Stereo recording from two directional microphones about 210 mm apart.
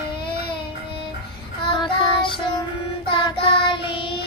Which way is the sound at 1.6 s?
25° left (ahead or behind).